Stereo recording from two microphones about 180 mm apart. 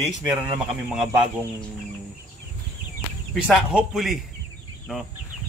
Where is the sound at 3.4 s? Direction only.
5° right (ahead or behind).